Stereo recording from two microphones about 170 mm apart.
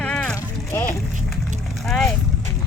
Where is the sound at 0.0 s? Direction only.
5° left (ahead or behind).